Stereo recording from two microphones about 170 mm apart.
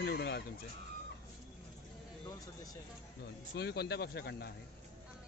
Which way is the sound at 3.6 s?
75° left (ahead or behind).